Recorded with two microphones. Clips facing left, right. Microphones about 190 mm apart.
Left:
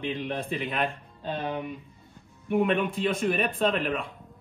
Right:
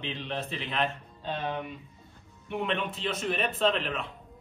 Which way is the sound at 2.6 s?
50° left (ahead or behind).